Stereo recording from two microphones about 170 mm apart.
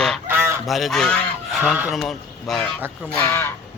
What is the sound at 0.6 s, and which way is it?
Speech, centre (ahead or behind).